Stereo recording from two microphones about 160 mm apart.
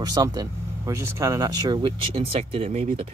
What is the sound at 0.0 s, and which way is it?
Speech, 25° right (ahead or behind).